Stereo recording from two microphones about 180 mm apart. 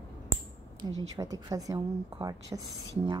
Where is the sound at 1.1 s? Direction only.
20° right (ahead or behind).